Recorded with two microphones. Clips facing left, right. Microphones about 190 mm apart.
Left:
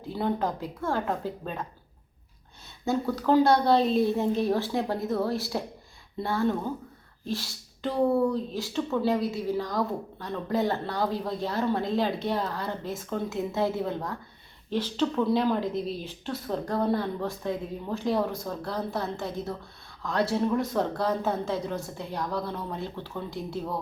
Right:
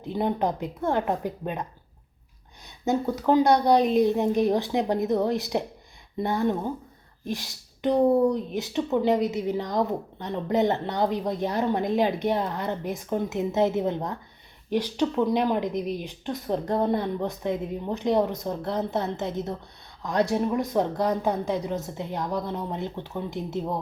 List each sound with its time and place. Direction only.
0.0 s speech: 20° right (ahead or behind)
2.8 s a woman's voice: 20° right (ahead or behind)